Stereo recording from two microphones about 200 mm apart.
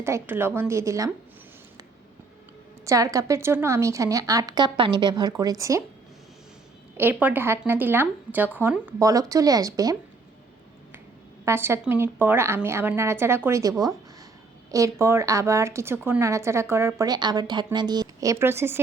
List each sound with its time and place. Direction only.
0.0 s speech: 10° right (ahead or behind)
2.8 s speech: 15° right (ahead or behind)
6.9 s speech: 10° right (ahead or behind)
11.4 s speech: 10° right (ahead or behind)